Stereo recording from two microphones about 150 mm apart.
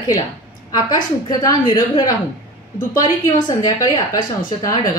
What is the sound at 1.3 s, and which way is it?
A woman's voice, 25° left (ahead or behind).